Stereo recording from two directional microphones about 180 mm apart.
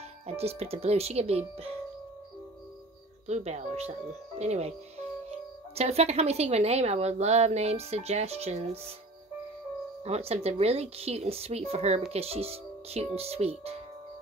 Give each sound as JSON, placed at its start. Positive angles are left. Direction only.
{"t": 0.3, "sound": "a woman's voice", "side_deg": -35}
{"t": 3.3, "sound": "a woman's voice", "side_deg": -40}
{"t": 10.0, "sound": "a woman's voice", "side_deg": -35}